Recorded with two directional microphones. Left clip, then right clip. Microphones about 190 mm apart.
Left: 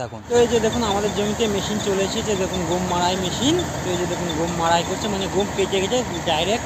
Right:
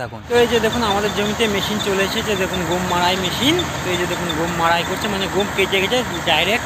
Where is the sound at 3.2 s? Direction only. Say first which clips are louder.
Right 3 dB; 20° left (ahead or behind).